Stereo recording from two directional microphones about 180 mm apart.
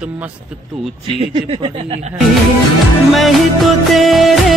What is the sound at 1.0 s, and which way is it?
Speech, 30° right (ahead or behind).